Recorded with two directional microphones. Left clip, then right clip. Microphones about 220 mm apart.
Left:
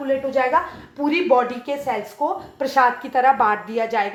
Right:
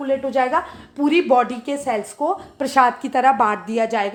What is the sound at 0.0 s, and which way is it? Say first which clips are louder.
A woman's voice: right 1 dB; 50° right (ahead or behind).